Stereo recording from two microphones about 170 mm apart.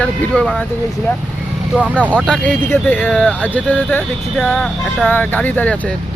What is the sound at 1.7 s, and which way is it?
Speech, 5° right (ahead or behind).